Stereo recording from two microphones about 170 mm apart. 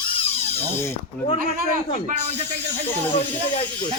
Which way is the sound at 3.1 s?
30° left (ahead or behind).